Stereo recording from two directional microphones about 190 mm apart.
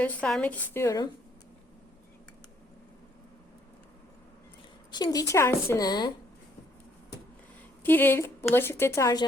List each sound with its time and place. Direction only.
0.0 s a woman's voice: 5° left (ahead or behind)
4.9 s a woman's voice: 20° left (ahead or behind)
7.9 s a woman's voice: 10° left (ahead or behind)